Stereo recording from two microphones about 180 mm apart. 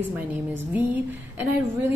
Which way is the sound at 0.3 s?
10° right (ahead or behind).